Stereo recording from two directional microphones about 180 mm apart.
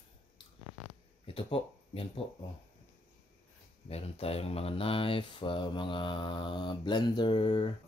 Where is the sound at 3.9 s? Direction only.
35° left (ahead or behind).